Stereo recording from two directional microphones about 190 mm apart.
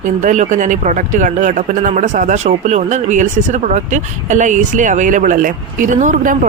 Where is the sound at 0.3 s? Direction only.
40° right (ahead or behind).